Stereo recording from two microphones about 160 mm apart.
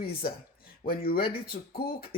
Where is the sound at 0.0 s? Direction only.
70° left (ahead or behind).